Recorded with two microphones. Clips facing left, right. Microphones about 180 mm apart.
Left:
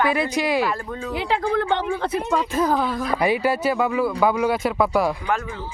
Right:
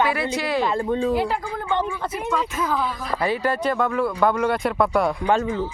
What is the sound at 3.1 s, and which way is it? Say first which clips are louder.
Speech: left 2 dB; 15° left (ahead or behind).